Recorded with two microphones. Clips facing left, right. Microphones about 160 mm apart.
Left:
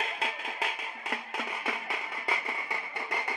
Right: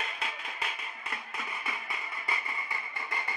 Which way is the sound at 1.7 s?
85° left.